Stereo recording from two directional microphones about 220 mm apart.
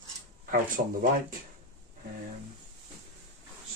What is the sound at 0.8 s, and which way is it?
Speech, 40° right (ahead or behind).